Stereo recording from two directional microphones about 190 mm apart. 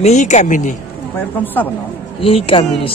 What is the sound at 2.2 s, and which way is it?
Speech, 30° left (ahead or behind).